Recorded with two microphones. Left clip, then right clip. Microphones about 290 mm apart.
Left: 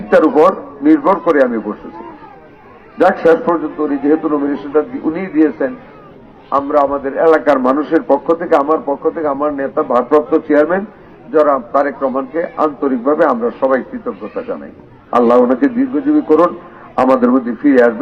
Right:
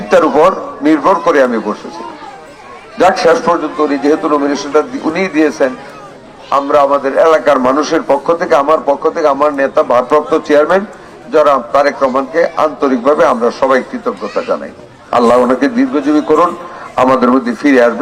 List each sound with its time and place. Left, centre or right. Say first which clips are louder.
0.1 s a man's voice: right 1 dB; right
3.0 s a man's voice: right 2 dB; right
15.1 s a man's voice: right 2 dB; right